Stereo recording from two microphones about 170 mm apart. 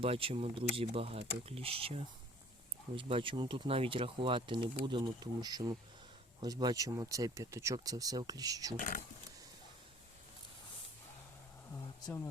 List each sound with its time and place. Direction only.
0.0 s speech: 30° right (ahead or behind)
8.7 s speech: 50° left (ahead or behind)
11.7 s speech: 15° left (ahead or behind)